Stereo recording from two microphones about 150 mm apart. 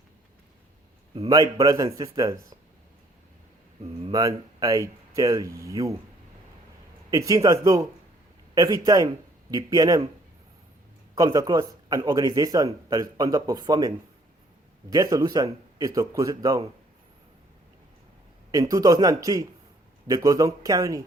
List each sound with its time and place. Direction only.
1.3 s a man's voice: 25° right (ahead or behind)
4.1 s a man's voice: 25° right (ahead or behind)
7.1 s a man's voice: 20° right (ahead or behind)
11.1 s a man's voice: 25° right (ahead or behind)
18.5 s a man's voice: 25° right (ahead or behind)